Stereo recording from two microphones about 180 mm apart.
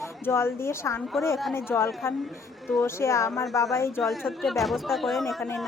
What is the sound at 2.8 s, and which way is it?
A woman's voice, 15° left (ahead or behind).